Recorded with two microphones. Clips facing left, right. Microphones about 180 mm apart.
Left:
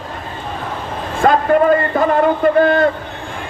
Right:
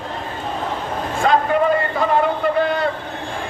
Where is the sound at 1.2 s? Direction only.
50° left (ahead or behind).